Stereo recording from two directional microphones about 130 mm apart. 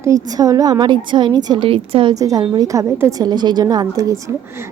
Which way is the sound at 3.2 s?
35° right (ahead or behind).